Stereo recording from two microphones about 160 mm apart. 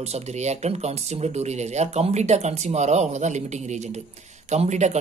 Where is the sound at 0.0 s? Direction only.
45° right (ahead or behind).